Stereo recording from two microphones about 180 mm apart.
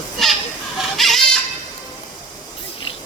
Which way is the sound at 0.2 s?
Centre (ahead or behind).